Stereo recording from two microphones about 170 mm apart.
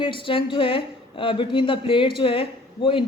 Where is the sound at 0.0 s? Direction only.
30° left (ahead or behind).